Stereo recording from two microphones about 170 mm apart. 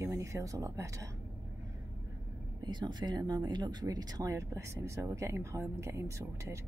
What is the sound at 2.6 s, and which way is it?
Speech, 25° right (ahead or behind).